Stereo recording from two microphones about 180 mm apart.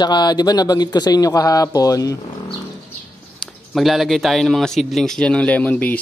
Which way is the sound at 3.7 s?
Centre (ahead or behind).